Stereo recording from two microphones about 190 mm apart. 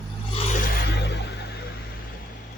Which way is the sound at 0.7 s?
65° left (ahead or behind).